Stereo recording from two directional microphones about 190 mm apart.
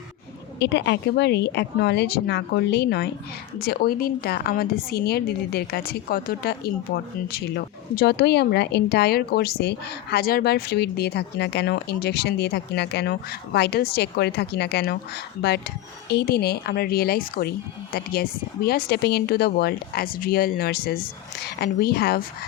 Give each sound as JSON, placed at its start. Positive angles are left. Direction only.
{"t": 0.6, "sound": "a woman's voice", "side_deg": 65}